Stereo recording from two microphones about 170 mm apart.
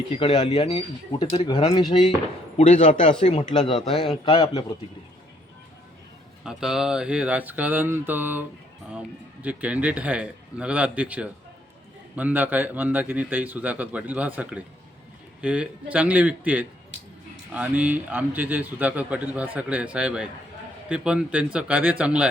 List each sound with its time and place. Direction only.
0.1 s speech: 35° left (ahead or behind)
2.6 s a man's voice: 45° left (ahead or behind)
3.8 s speech: 30° left (ahead or behind)
6.4 s speech: 5° right (ahead or behind)